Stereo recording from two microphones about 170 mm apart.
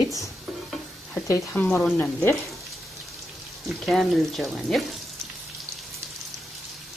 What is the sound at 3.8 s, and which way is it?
Speech, centre (ahead or behind).